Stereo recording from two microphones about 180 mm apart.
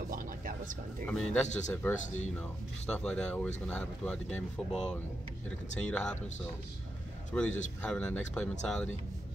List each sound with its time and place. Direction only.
0.1 s a sound: 50° right (ahead or behind)
1.0 s speech: 5° left (ahead or behind)
7.3 s speech: 5° left (ahead or behind)